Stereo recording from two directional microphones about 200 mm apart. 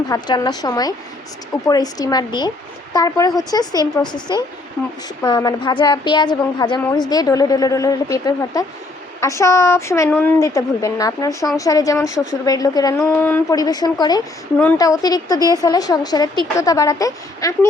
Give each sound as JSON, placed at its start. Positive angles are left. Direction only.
{"t": 0.1, "sound": "a woman's voice", "side_deg": 20}